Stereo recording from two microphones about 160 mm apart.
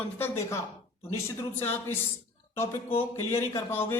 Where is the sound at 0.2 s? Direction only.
15° left (ahead or behind).